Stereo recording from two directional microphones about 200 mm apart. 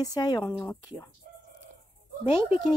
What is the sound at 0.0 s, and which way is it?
Speech, 20° left (ahead or behind).